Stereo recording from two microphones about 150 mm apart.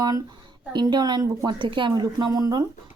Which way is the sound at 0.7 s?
30° right (ahead or behind).